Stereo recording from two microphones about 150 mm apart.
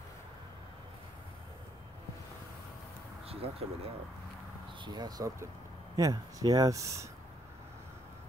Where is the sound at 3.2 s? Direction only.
40° right (ahead or behind).